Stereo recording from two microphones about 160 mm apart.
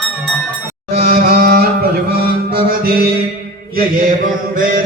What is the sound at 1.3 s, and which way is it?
Music, 70° right (ahead or behind).